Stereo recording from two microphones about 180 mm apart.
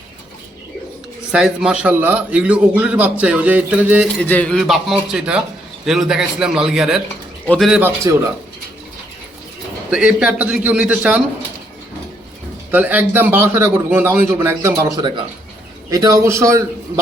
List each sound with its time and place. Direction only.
1.3 s a man's voice: 5° right (ahead or behind)
4.2 s a man's voice: 10° left (ahead or behind)
7.4 s a man's voice: 5° left (ahead or behind)
7.7 s a man's voice: 10° right (ahead or behind)
9.9 s a man's voice: 5° right (ahead or behind)
12.7 s a man's voice: 10° right (ahead or behind)